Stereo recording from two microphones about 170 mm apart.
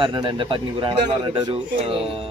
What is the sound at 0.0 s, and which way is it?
Speech, 25° right (ahead or behind).